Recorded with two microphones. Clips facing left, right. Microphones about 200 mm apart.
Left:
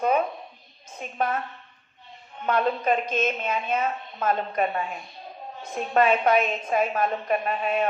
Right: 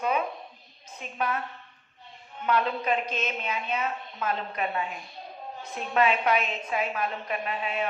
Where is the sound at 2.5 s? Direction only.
45° left (ahead or behind).